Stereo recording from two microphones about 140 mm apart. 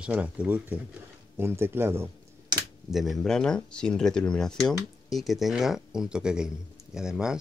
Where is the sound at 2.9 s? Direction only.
Centre (ahead or behind).